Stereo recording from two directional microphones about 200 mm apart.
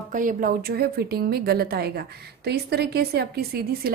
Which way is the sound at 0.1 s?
40° right (ahead or behind).